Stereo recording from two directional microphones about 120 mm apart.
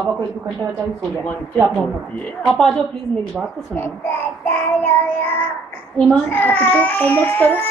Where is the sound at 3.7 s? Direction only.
15° left (ahead or behind).